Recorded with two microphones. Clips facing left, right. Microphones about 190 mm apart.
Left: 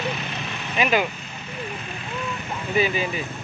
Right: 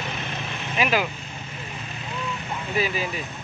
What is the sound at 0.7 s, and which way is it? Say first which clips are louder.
Speech: left 2 dB; centre (ahead or behind).